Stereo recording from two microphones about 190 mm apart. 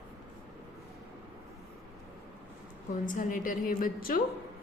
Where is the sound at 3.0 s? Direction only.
45° left (ahead or behind).